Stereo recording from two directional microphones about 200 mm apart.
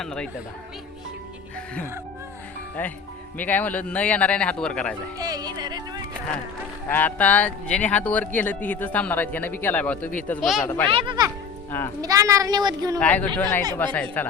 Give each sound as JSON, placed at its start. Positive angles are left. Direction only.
{"t": 0.0, "sound": "speech", "side_deg": 5}
{"t": 3.3, "sound": "speech", "side_deg": 10}
{"t": 5.1, "sound": "music", "side_deg": -20}
{"t": 6.8, "sound": "speech", "side_deg": 10}
{"t": 10.6, "sound": "speech", "side_deg": 10}
{"t": 10.9, "sound": "a child's voice", "side_deg": -25}
{"t": 13.0, "sound": "speech", "side_deg": 5}